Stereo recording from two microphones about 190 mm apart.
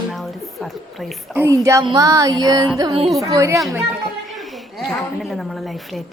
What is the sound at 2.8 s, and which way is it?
Music, 25° right (ahead or behind).